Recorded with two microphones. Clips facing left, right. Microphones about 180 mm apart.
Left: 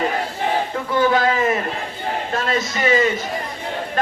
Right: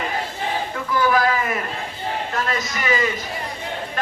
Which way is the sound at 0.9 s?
25° left (ahead or behind).